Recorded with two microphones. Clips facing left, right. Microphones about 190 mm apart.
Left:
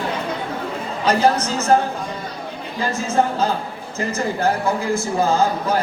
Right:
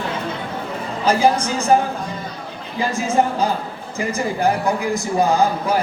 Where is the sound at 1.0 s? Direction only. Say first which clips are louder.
Right 1 dB; 10° right (ahead or behind).